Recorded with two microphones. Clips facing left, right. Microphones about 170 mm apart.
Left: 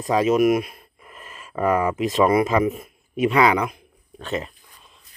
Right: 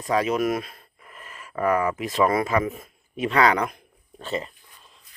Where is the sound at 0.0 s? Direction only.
20° left (ahead or behind).